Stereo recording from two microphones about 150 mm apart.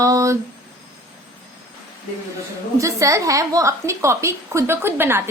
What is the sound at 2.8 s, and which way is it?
A woman's voice, 20° right (ahead or behind).